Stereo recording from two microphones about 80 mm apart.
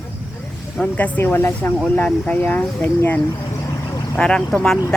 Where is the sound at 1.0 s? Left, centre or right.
Left.